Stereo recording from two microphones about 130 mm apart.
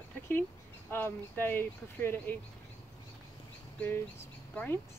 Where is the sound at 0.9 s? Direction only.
15° left (ahead or behind).